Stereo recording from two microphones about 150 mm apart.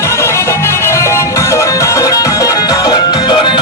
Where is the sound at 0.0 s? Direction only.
20° left (ahead or behind).